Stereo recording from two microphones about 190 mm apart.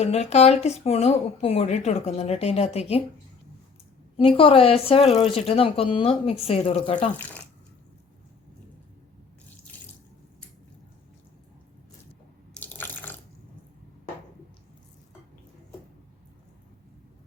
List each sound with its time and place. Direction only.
0.0 s speech: 35° left (ahead or behind)
4.2 s speech: 30° left (ahead or behind)
12.5 s water: 10° left (ahead or behind)